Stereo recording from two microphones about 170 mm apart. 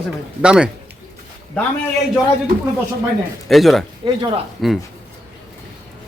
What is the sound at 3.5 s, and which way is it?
Speech, centre (ahead or behind).